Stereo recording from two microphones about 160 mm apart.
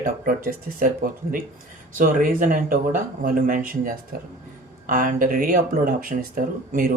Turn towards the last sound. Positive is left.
turn(degrees=-60)  # may be behind; listen again after turning